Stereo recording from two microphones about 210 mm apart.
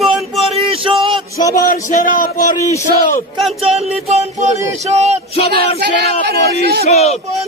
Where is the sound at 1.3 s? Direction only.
15° left (ahead or behind).